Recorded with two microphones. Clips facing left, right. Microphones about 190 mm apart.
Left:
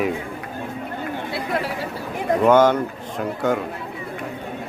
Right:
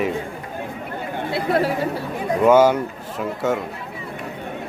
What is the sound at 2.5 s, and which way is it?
A man's voice, 10° right (ahead or behind).